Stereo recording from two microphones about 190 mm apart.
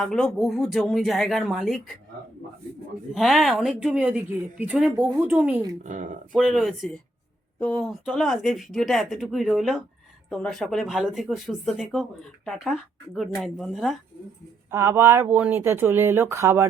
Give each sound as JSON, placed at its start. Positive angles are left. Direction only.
{"t": 0.0, "sound": "speech", "side_deg": 0}
{"t": 3.2, "sound": "a woman's voice", "side_deg": 0}
{"t": 5.8, "sound": "speech", "side_deg": -40}
{"t": 6.3, "sound": "speech", "side_deg": 0}
{"t": 14.7, "sound": "a woman's voice", "side_deg": -15}